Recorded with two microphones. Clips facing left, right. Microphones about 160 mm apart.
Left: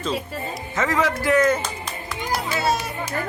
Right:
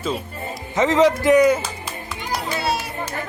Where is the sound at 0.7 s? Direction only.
20° right (ahead or behind).